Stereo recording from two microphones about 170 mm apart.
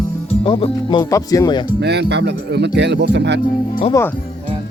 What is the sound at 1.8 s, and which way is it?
Speech, 80° right.